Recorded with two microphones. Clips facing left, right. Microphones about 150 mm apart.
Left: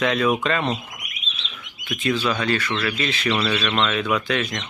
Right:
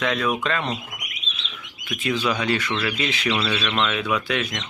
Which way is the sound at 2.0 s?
10° right (ahead or behind).